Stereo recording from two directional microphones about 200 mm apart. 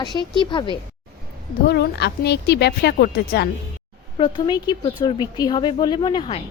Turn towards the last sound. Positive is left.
turn(degrees=25)  # may be behind; listen again after turning